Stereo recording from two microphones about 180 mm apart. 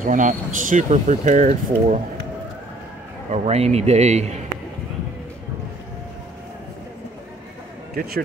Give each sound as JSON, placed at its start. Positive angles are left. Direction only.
{"t": 0.0, "sound": "speech", "side_deg": -45}
{"t": 3.3, "sound": "a man's voice", "side_deg": -35}
{"t": 7.9, "sound": "speech", "side_deg": -55}